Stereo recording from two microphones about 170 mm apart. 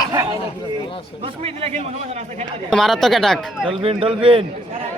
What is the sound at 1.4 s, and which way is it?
Speech, 35° right (ahead or behind).